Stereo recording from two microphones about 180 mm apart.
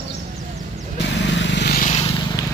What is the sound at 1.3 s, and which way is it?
Vehicle, 85° left.